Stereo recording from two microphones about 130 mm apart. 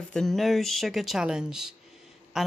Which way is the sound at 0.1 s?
5° left (ahead or behind).